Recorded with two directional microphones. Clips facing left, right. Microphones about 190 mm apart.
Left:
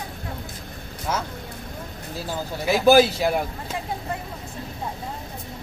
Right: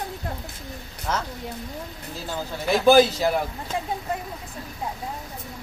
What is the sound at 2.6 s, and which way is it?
Speech, 5° left (ahead or behind).